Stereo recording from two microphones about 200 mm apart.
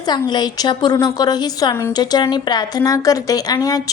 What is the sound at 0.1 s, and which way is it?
A woman's voice, 20° left (ahead or behind).